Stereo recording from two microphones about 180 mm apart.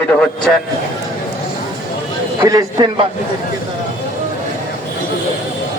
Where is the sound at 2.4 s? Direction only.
20° right (ahead or behind).